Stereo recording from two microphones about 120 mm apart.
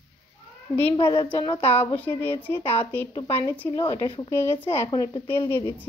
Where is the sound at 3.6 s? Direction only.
35° left (ahead or behind).